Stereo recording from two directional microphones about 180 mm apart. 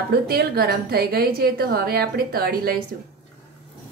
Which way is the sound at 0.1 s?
60° right (ahead or behind).